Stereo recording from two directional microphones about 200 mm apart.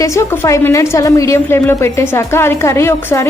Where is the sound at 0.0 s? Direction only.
15° left (ahead or behind).